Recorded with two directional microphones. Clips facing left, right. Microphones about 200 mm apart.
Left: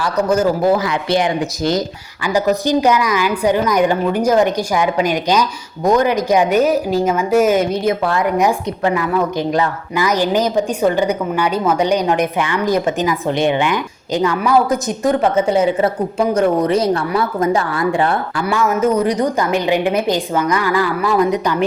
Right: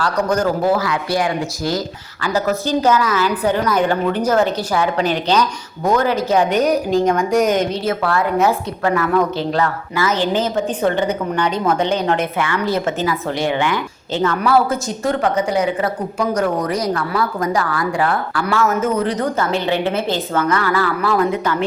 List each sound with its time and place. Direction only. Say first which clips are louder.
0.0 s a woman's voice: left 2 dB; 10° left (ahead or behind); by 18.4 s 25° left (ahead or behind)
18.4 s a woman's voice: left 2 dB; 10° left (ahead or behind)